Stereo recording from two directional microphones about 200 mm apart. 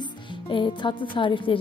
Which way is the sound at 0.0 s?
25° left (ahead or behind).